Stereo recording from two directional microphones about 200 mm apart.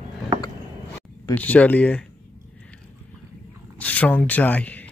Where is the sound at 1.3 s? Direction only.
5° left (ahead or behind).